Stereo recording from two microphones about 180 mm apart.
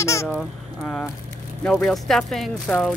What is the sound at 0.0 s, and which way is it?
Honk, 15° left (ahead or behind).